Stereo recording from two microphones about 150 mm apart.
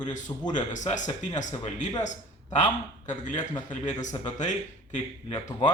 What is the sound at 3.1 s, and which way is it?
Speech, 55° left (ahead or behind).